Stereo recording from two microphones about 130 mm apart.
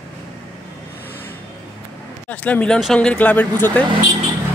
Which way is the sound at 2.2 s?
10° left (ahead or behind).